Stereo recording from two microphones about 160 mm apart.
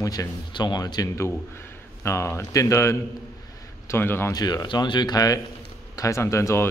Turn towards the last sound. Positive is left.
turn(degrees=15)  # may be behind; listen again after turning